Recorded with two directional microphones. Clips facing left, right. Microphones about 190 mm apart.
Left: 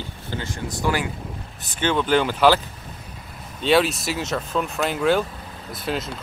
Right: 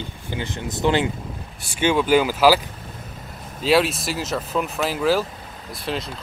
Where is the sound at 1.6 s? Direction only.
10° right (ahead or behind).